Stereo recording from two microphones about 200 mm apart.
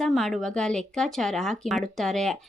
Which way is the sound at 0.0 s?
Centre (ahead or behind).